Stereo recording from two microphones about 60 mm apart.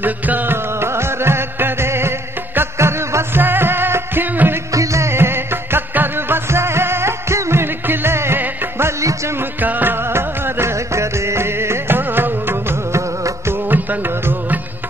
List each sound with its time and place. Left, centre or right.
0.0 s music: right
0.7 s music: right
3.4 s music: right
4.7 s music: right
9.6 s music: right
10.1 s music: right
12.9 s music: right
13.7 s music: right